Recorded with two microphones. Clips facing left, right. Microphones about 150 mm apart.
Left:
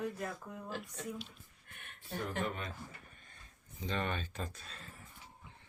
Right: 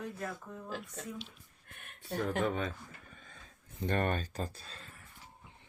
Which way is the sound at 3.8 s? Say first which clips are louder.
Right 5 dB; 50° right (ahead or behind).